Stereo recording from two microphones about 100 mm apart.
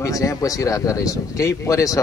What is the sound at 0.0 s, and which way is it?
Speech, 35° left (ahead or behind).